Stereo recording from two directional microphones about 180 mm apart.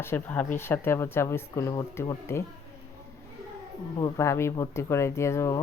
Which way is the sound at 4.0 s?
15° left (ahead or behind).